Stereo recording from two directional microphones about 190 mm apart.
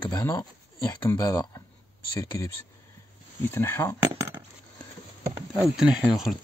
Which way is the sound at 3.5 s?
10° left (ahead or behind).